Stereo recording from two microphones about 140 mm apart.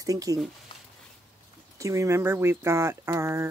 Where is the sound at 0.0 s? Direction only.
25° right (ahead or behind).